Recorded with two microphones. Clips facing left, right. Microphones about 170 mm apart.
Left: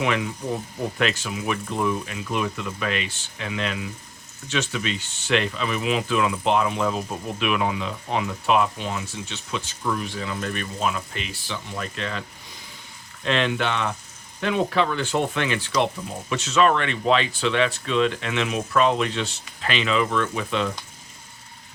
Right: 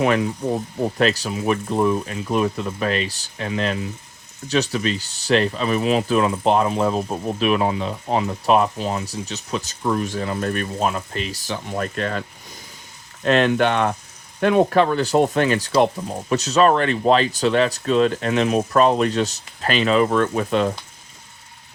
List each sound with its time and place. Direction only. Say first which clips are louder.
0.0 s speech: right 6 dB; 40° right (ahead or behind)
13.2 s speech: right 6 dB; 45° right (ahead or behind)